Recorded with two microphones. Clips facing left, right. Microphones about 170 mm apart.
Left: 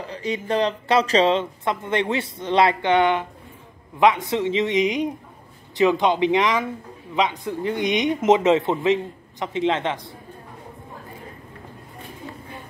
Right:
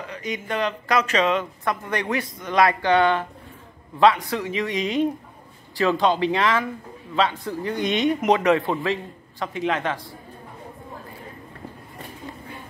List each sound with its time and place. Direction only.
0.0 s speech: 30° left (ahead or behind)